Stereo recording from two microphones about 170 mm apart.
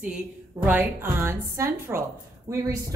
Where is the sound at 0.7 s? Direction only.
10° right (ahead or behind).